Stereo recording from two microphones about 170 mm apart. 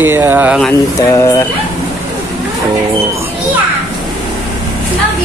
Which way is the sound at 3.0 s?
15° right (ahead or behind).